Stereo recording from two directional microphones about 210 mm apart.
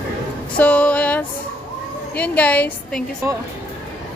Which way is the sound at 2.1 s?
5° left (ahead or behind).